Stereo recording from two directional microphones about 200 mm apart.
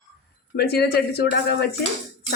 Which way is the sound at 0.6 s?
55° left (ahead or behind).